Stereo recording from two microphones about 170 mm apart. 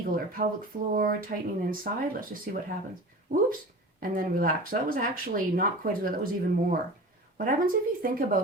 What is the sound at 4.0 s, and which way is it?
Speech, 55° right (ahead or behind).